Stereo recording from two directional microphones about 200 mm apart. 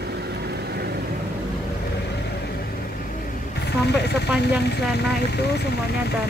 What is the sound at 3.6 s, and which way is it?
Speech, 55° left (ahead or behind).